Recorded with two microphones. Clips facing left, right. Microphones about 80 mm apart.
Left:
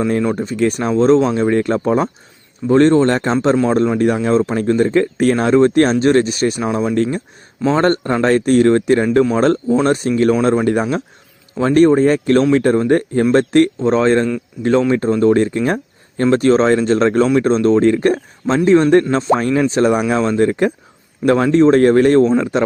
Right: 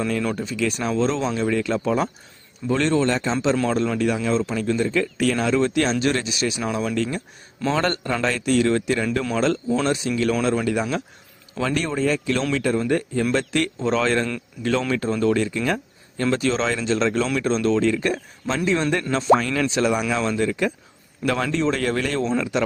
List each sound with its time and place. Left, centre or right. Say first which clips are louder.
0.1 s speech: left 7 dB; left
0.4 s speech: left 7 dB; left
6.6 s speech: left 6 dB; left